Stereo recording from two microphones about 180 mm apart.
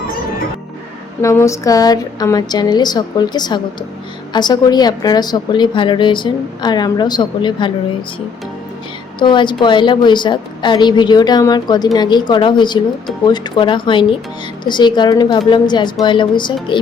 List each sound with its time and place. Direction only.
1.2 s a woman's voice: 15° left (ahead or behind)
9.1 s a woman's voice: 25° left (ahead or behind)